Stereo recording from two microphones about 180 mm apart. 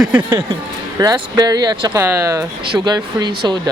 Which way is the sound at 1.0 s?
20° right (ahead or behind).